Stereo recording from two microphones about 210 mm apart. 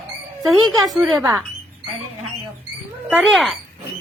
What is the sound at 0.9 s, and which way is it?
Speech, centre (ahead or behind).